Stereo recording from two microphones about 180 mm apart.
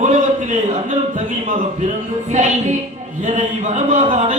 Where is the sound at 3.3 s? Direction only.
40° right (ahead or behind).